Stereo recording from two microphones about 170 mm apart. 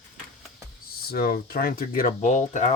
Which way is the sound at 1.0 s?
65° left (ahead or behind).